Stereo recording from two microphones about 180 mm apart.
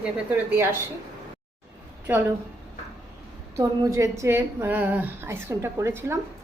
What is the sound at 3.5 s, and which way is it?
A woman's voice, 15° right (ahead or behind).